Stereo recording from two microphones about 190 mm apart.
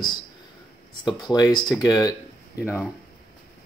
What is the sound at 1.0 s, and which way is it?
Speech, 20° left (ahead or behind).